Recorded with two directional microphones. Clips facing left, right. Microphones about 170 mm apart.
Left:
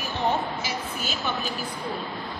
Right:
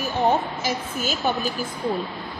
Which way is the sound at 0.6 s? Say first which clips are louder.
Right 5 dB; 45° right (ahead or behind).